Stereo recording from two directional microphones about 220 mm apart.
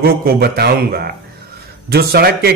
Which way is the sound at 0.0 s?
45° right (ahead or behind).